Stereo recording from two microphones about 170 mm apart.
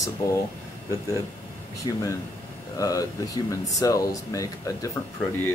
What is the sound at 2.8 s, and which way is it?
Speech, 20° left (ahead or behind).